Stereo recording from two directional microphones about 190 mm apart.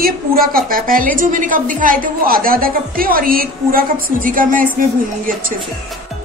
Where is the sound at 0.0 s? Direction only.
50° right (ahead or behind).